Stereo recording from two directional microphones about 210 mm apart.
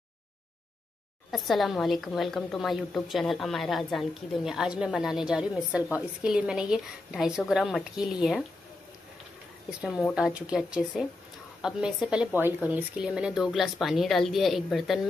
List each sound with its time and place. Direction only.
1.3 s a woman's voice: centre (ahead or behind)
9.7 s a woman's voice: 5° right (ahead or behind)